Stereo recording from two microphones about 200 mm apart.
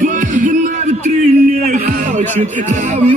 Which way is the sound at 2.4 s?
35° right (ahead or behind).